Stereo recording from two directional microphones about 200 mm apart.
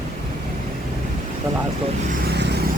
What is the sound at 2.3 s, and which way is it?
Vehicle, 55° right (ahead or behind).